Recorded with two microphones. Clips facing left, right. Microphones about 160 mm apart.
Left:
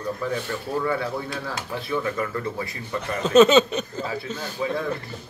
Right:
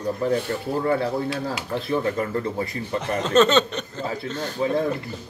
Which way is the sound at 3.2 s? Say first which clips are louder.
Left 4 dB; 5° left (ahead or behind).